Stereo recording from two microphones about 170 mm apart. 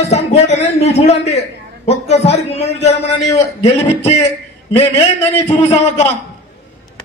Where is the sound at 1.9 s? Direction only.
40° left (ahead or behind).